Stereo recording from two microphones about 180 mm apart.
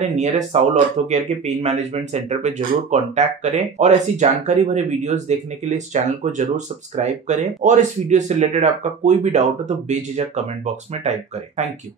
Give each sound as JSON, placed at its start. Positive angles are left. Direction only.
{"t": 0.0, "sound": "speech", "side_deg": -40}